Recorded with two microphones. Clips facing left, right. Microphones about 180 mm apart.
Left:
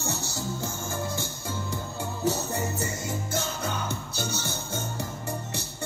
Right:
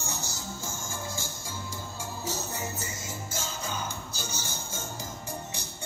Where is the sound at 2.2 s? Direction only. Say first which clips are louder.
Left 8 dB; 65° left (ahead or behind).